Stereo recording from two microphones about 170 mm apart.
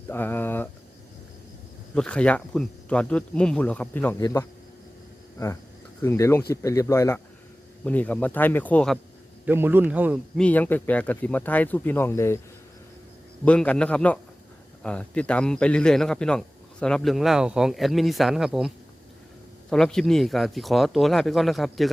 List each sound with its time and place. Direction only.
0.1 s speech: 10° left (ahead or behind)
2.0 s speech: 5° left (ahead or behind)
6.0 s speech: 15° left (ahead or behind)
9.5 s a man's voice: 10° right (ahead or behind)
10.3 s speech: 10° left (ahead or behind)
13.4 s speech: 10° left (ahead or behind)
19.7 s speech: 5° left (ahead or behind)